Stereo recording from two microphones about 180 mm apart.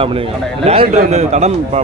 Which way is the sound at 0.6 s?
35° right (ahead or behind).